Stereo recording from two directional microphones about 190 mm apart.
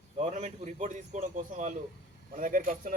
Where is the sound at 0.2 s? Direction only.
35° right (ahead or behind).